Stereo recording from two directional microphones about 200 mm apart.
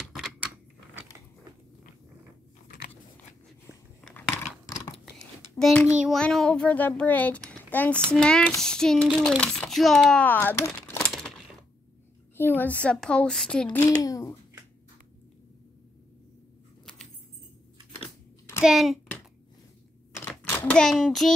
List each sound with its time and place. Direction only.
0.0 s typewriter: centre (ahead or behind)
4.0 s a sound: 5° left (ahead or behind)
5.9 s a child's voice: centre (ahead or behind)
12.4 s a child's voice: 10° left (ahead or behind)
13.7 s a child's voice: 15° left (ahead or behind)
18.6 s a child's voice: centre (ahead or behind)
20.2 s a sound: 10° left (ahead or behind)